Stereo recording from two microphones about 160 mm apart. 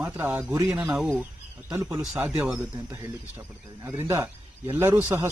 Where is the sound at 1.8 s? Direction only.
15° right (ahead or behind).